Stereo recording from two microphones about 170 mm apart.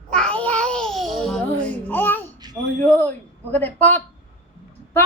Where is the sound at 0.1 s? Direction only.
5° left (ahead or behind).